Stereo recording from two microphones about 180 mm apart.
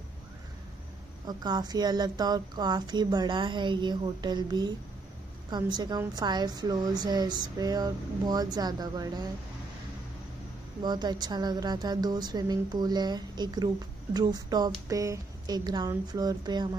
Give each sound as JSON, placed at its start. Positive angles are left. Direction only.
{"t": 1.2, "sound": "a woman's voice", "side_deg": -20}
{"t": 10.8, "sound": "a woman's voice", "side_deg": -25}